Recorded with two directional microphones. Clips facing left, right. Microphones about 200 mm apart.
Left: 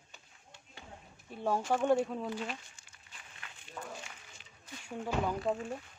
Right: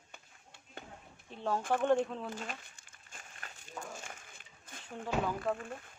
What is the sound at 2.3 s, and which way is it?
Crumpling, 45° right (ahead or behind).